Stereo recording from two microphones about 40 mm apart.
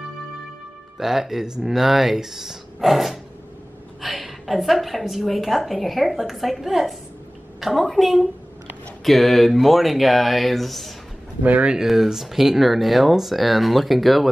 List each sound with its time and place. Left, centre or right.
0.9 s a woman's voice: centre
11.4 s speech: right
11.8 s a woman's voice: centre